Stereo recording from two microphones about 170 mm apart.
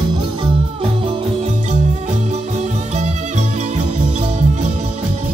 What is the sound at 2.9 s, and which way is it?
Music, 40° right (ahead or behind).